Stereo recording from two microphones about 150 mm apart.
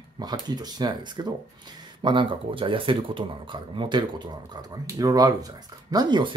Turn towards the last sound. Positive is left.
turn(degrees=-30)  # may be behind; listen again after turning